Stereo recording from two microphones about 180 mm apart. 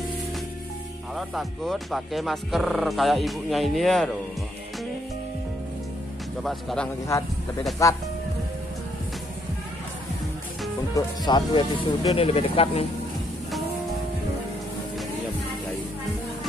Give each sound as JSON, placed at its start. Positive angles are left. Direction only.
{"t": 1.1, "sound": "speech", "side_deg": 0}
{"t": 6.4, "sound": "speech", "side_deg": 5}
{"t": 7.8, "sound": "speech", "side_deg": 15}
{"t": 11.0, "sound": "speech", "side_deg": 25}